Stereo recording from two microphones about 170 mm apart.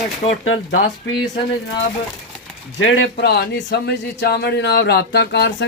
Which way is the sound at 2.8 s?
90° left.